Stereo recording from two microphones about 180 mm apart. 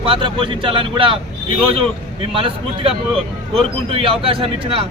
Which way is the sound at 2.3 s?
30° right (ahead or behind).